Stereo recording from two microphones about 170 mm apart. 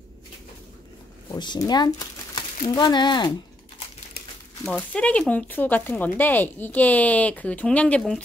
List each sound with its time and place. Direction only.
1.3 s speech: 25° left (ahead or behind)
4.6 s speech: 5° left (ahead or behind)